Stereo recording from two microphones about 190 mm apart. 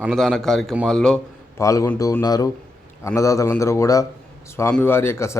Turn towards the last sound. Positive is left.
turn(degrees=15)  # may be behind; listen again after turning